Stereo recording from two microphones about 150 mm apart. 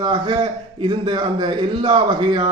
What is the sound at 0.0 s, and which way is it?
A man's voice, 35° right (ahead or behind).